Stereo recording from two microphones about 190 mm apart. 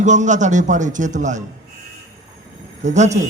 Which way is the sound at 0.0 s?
40° right (ahead or behind).